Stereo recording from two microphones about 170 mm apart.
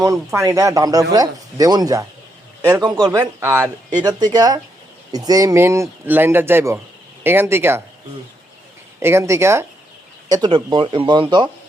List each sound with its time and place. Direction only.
0.3 s speech: 20° right (ahead or behind)
9.0 s speech: 15° right (ahead or behind)